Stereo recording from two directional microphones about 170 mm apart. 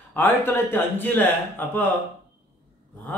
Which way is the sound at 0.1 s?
10° left (ahead or behind).